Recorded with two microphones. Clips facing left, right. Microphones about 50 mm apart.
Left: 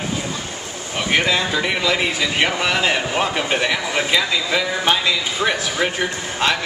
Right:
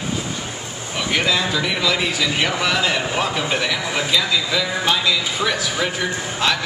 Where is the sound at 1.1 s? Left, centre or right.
Left.